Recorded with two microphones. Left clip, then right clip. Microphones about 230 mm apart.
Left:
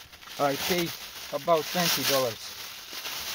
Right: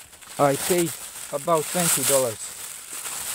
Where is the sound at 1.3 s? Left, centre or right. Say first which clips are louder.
Right 2 dB; right.